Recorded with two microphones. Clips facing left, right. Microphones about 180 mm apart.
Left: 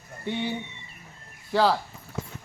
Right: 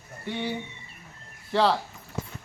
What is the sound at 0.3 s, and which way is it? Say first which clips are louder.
Speech: left 2 dB; 15° left (ahead or behind).